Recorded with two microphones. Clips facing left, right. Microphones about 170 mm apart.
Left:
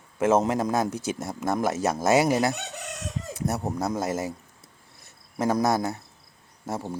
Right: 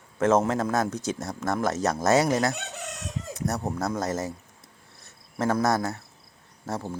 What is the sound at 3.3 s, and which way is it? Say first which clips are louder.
Speech: left 1 dB; 25° left (ahead or behind).